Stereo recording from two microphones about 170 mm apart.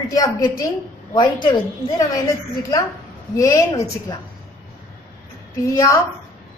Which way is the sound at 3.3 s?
20° left (ahead or behind).